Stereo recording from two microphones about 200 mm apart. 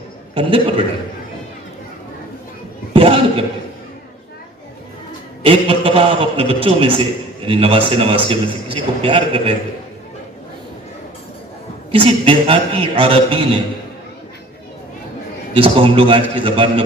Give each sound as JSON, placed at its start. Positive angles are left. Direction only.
{"t": 0.3, "sound": "a man's voice", "side_deg": -25}
{"t": 2.9, "sound": "a sound", "side_deg": -25}
{"t": 5.4, "sound": "a man's voice", "side_deg": -25}
{"t": 11.9, "sound": "a man's voice", "side_deg": -25}
{"t": 15.5, "sound": "a man's voice", "side_deg": -25}